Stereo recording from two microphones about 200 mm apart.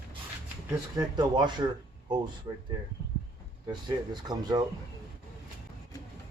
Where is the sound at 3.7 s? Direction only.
20° right (ahead or behind).